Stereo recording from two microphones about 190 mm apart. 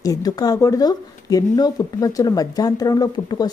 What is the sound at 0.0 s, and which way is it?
Speech, 20° left (ahead or behind).